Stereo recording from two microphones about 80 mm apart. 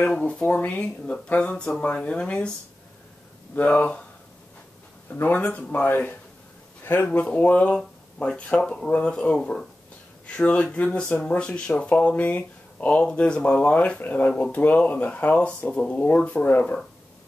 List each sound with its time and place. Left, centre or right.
0.0 s speech: centre
3.5 s speech: centre
5.1 s speech: left
6.8 s a sound: left
7.1 s speech: centre